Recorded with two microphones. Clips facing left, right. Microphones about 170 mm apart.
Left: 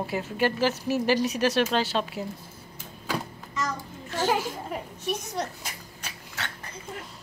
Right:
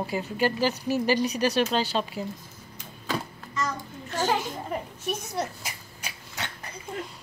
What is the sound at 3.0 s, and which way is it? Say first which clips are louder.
Music: even; 10° left (ahead or behind).